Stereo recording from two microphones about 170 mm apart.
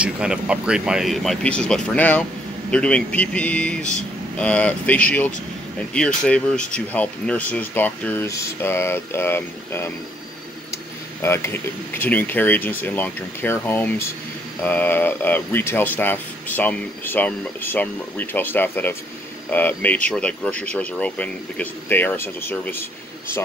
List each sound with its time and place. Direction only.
0.0 s speech: 5° right (ahead or behind); by 22.8 s 10° left (ahead or behind)